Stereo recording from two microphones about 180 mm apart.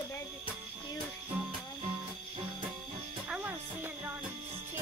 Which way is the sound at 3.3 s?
10° right (ahead or behind).